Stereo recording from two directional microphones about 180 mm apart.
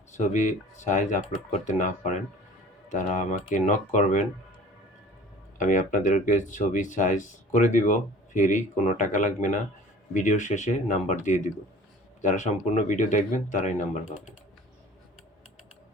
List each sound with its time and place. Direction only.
0.1 s speech: 40° left (ahead or behind)
5.5 s speech: 45° left (ahead or behind)